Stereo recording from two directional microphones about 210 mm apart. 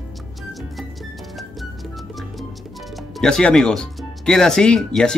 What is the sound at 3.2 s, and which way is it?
Speech, 5° left (ahead or behind).